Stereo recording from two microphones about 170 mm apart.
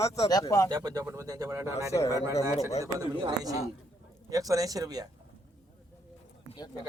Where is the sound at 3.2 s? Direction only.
20° right (ahead or behind).